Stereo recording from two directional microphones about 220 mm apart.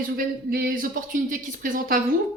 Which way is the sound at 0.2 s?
40° right (ahead or behind).